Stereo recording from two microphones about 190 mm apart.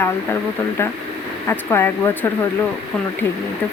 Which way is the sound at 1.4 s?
10° left (ahead or behind).